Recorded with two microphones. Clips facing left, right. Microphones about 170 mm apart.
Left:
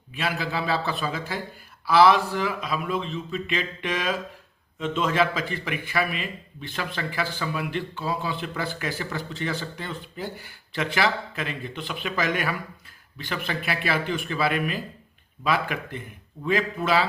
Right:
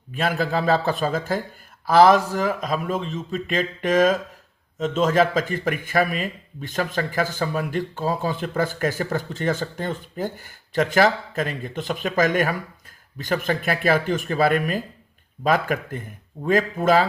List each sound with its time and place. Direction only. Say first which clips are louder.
0.1 s speech: right 5 dB; 50° right (ahead or behind)